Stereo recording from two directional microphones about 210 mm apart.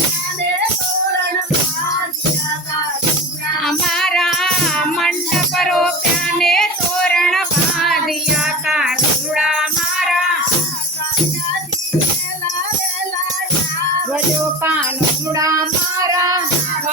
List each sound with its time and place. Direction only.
3.6 s music: centre (ahead or behind)
14.6 s music: 10° right (ahead or behind)
15.4 s child singing: 15° right (ahead or behind)